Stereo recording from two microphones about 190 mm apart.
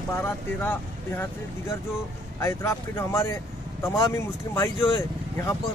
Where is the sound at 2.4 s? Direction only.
15° left (ahead or behind).